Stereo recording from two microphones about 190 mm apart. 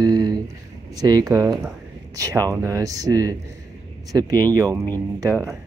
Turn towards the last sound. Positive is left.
turn(degrees=-15)  # may be behind; listen again after turning